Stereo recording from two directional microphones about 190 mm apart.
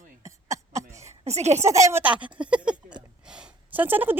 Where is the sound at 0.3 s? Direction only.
15° right (ahead or behind).